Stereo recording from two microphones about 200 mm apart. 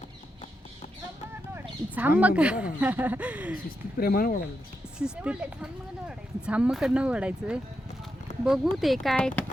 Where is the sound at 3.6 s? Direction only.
50° left (ahead or behind).